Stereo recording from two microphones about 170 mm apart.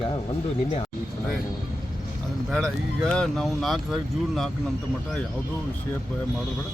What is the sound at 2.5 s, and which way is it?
Speech, centre (ahead or behind).